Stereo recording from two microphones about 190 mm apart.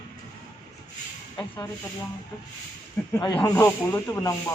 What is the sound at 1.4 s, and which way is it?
Snake, 20° left (ahead or behind).